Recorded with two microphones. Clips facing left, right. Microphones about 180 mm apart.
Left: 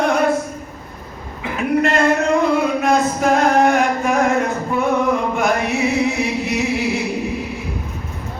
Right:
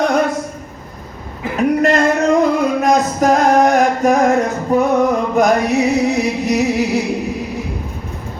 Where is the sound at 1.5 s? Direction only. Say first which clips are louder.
Right 3 dB; 40° right (ahead or behind).